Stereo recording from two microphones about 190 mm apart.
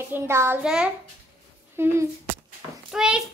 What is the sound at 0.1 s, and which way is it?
A child's voice, 15° right (ahead or behind).